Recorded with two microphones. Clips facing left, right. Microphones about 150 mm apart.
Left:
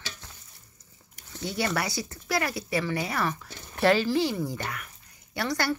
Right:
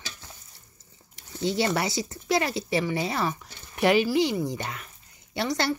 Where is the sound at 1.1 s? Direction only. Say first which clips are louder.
Right 6 dB; 25° right (ahead or behind).